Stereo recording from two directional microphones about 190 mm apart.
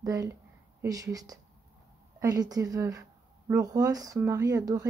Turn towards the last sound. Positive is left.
turn(degrees=-20)  # may be behind; listen again after turning